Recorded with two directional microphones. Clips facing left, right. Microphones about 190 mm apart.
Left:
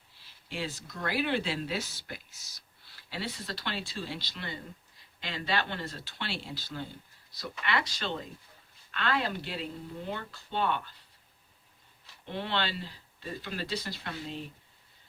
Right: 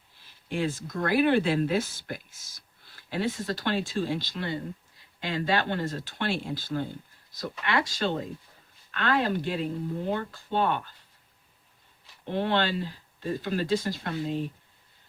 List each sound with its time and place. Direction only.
0.4 s speech: 50° right (ahead or behind)
12.2 s speech: 45° right (ahead or behind)